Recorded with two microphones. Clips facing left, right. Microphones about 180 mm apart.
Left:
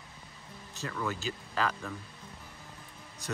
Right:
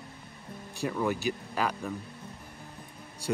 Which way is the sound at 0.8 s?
15° right (ahead or behind).